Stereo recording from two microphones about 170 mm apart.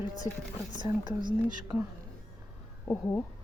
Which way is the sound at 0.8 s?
25° right (ahead or behind).